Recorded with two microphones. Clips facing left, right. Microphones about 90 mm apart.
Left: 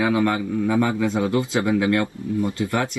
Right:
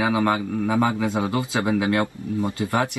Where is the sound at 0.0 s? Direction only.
25° right (ahead or behind).